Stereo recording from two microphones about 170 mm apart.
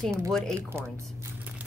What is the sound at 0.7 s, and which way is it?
Speech, 15° right (ahead or behind).